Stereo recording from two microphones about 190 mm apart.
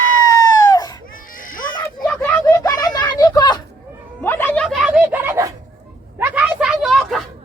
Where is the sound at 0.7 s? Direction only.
20° left (ahead or behind).